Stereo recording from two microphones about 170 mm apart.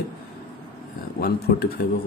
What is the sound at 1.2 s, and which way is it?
Speech, 65° left (ahead or behind).